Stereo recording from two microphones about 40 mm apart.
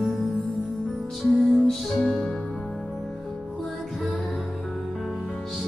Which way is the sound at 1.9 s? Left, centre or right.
Centre.